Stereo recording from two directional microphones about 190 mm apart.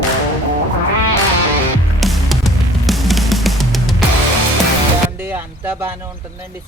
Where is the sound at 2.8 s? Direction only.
Centre (ahead or behind).